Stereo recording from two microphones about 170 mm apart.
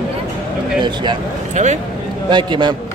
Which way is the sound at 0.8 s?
25° right (ahead or behind).